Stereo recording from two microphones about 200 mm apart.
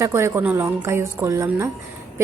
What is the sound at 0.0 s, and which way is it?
A woman's voice, 15° right (ahead or behind).